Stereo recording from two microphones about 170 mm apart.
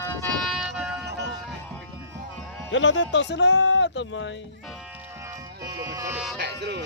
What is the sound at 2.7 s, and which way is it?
Speech, 90° left.